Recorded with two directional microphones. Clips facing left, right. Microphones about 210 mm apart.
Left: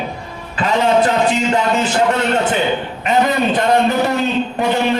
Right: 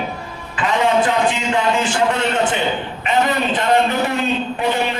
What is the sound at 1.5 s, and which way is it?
Speech, 40° left (ahead or behind).